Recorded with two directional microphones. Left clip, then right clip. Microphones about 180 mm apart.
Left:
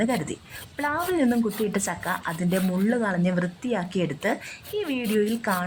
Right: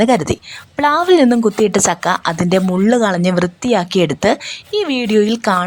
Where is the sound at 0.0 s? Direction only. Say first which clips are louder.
Right 13 dB; 30° right (ahead or behind).